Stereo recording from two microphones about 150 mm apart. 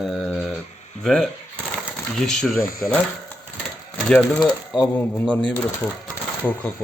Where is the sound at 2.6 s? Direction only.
75° left (ahead or behind).